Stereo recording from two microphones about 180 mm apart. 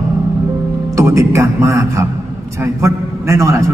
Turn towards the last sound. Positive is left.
turn(degrees=-15)  # may be behind; listen again after turning